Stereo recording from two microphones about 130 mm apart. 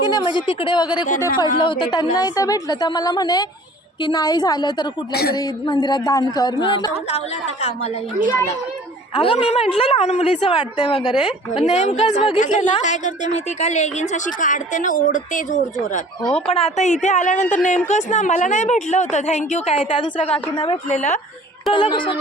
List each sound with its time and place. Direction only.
0.1 s speech: 35° left (ahead or behind)
2.1 s speech: 30° left (ahead or behind)
9.1 s a woman's voice: 45° left (ahead or behind)
11.6 s a woman's voice: 60° left (ahead or behind)
12.4 s a woman's voice: 75° left (ahead or behind)
14.3 s speech: 80° left
16.3 s a woman's voice: 50° left (ahead or behind)
20.9 s speech: 70° left (ahead or behind)
21.7 s speech: 40° left (ahead or behind)